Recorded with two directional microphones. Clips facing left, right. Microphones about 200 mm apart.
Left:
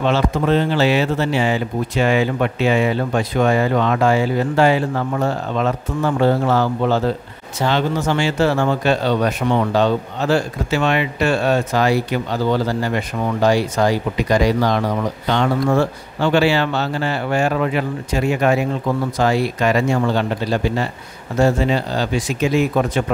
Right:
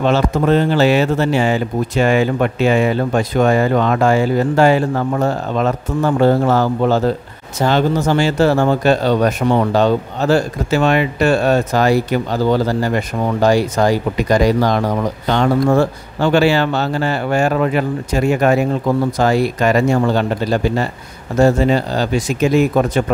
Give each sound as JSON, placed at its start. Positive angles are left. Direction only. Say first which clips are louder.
{"t": 0.0, "sound": "speech", "louder": "right 3 dB", "side_deg": -45}